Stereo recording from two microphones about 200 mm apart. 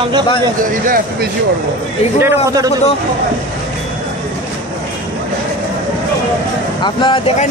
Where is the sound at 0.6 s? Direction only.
45° right (ahead or behind).